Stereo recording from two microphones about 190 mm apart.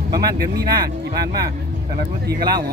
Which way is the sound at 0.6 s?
55° right (ahead or behind).